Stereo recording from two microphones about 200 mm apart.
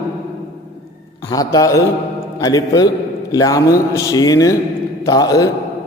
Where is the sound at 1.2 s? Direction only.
20° left (ahead or behind).